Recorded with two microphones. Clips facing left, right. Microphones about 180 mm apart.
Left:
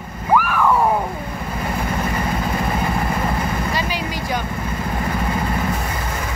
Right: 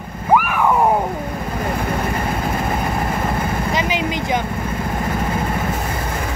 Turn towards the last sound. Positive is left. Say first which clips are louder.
# right 4 dB
turn(degrees=-20)  # may be behind; listen again after turning